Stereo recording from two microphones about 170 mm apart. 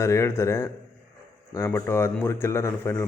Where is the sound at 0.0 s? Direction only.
15° left (ahead or behind).